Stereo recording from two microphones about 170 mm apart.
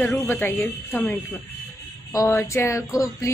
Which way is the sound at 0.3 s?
10° left (ahead or behind).